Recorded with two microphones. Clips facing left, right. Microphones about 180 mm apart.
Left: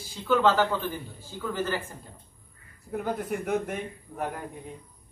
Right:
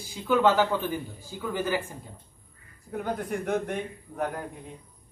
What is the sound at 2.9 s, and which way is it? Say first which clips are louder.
A man's voice: left 1 dB; 5° left (ahead or behind).